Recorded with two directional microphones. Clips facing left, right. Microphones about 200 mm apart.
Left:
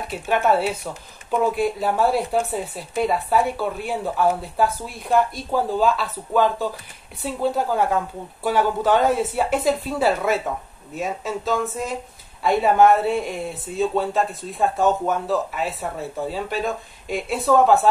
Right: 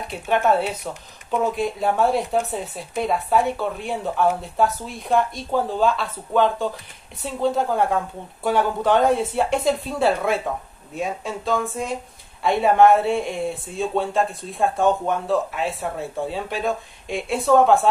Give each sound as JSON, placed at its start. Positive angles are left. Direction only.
{"t": 0.1, "sound": "speech", "side_deg": 5}